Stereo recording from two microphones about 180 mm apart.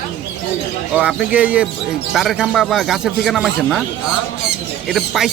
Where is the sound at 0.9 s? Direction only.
5° right (ahead or behind).